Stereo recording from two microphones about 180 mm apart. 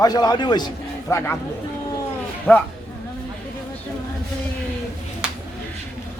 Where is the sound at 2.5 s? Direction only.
10° left (ahead or behind).